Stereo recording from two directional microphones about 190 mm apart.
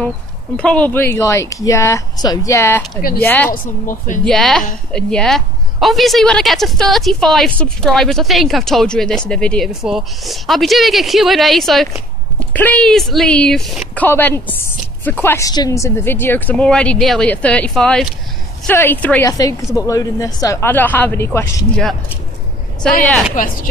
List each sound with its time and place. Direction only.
0.6 s a woman's voice: 5° left (ahead or behind)
3.6 s speech: 45° left (ahead or behind)
4.2 s a woman's voice: 5° left (ahead or behind)
23.0 s a woman's voice: centre (ahead or behind)
23.3 s speech: 45° left (ahead or behind)